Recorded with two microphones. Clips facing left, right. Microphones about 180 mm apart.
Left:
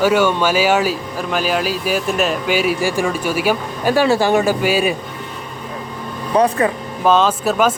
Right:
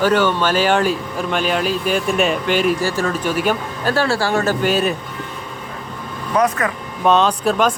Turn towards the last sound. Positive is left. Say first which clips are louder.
# left 1 dB
turn(degrees=5)  # may be behind; listen again after turning